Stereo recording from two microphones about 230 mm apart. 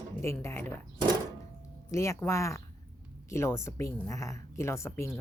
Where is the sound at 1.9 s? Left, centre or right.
Centre.